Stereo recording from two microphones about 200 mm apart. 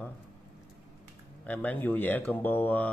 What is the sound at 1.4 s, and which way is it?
Speech, 10° left (ahead or behind).